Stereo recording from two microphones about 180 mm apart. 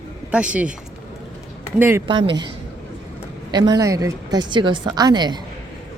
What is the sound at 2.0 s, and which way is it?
Speech, 25° right (ahead or behind).